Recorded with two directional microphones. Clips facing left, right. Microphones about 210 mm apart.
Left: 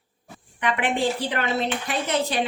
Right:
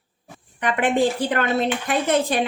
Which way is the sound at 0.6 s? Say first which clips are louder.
Right 4 dB; 45° right (ahead or behind).